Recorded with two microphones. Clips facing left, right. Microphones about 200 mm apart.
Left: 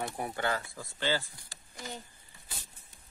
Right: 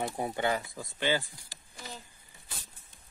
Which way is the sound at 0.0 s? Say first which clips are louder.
Right 3 dB; 20° right (ahead or behind).